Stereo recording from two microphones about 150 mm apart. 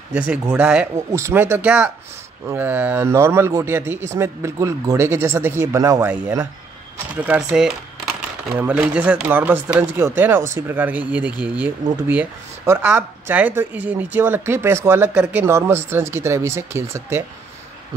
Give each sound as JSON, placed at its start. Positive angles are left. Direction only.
{"t": 0.1, "sound": "speech", "side_deg": -10}
{"t": 0.9, "sound": "speech", "side_deg": -20}